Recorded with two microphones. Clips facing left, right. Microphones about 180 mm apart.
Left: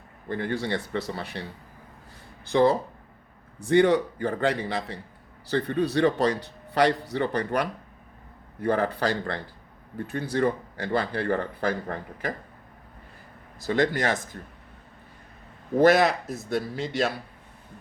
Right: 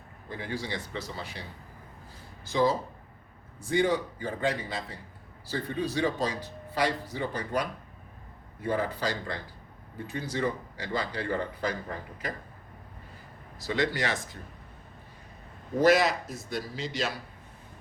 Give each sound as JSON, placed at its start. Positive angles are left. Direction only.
{"t": 0.3, "sound": "a man's voice", "side_deg": 60}
{"t": 13.7, "sound": "speech", "side_deg": 50}
{"t": 15.8, "sound": "speech", "side_deg": 55}